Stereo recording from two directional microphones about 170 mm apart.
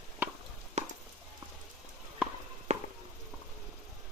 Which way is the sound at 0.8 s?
40° right (ahead or behind).